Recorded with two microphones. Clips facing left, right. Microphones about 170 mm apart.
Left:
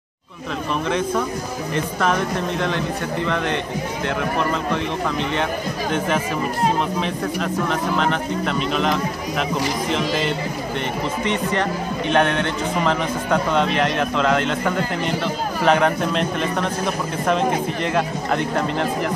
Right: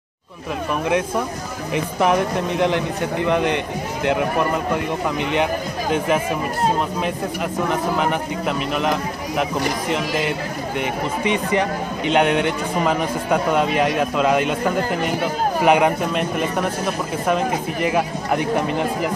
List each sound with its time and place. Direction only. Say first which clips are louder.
1.7 s a man's voice: right 3 dB; 15° right (ahead or behind)
5.3 s a man's voice: right 2 dB; 15° right (ahead or behind)